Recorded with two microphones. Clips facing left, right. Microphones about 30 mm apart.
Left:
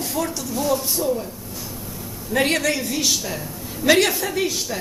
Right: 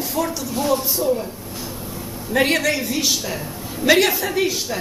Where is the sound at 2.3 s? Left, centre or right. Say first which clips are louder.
Right 2 dB; centre.